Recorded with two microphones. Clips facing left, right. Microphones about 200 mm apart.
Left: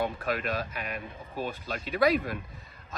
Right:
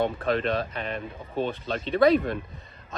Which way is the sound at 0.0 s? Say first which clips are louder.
Right 5 dB; 30° right (ahead or behind).